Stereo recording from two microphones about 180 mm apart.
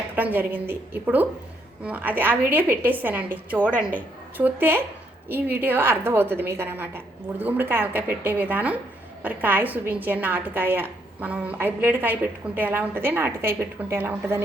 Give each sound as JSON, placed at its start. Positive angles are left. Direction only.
{"t": 0.2, "sound": "a woman's voice", "side_deg": -10}